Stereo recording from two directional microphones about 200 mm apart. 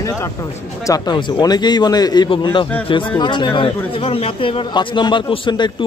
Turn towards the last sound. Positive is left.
turn(degrees=25)  # may be behind; listen again after turning